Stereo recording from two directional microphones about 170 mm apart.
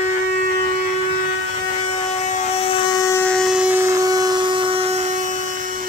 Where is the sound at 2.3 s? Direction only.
35° left (ahead or behind).